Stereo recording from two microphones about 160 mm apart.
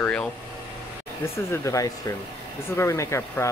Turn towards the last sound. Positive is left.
turn(degrees=20)  # may be behind; listen again after turning